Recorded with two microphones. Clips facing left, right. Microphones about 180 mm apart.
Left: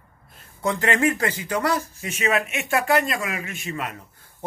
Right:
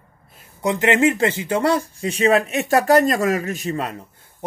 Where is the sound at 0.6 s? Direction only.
20° right (ahead or behind).